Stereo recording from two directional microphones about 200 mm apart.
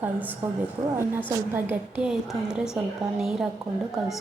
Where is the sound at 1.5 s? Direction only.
10° right (ahead or behind).